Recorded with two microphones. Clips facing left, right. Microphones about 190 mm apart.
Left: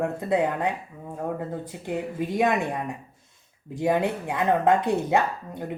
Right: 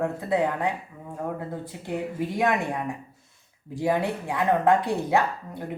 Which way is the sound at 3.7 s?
20° left (ahead or behind).